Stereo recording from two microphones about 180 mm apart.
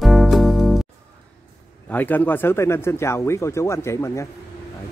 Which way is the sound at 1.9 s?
10° left (ahead or behind).